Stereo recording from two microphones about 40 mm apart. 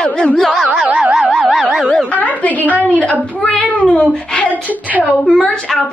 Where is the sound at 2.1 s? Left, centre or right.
Left.